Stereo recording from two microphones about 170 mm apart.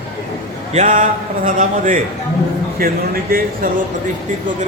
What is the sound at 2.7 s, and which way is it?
Speech, 60° right (ahead or behind).